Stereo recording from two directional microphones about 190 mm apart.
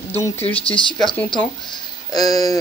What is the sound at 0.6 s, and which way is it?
Speech, 30° left (ahead or behind).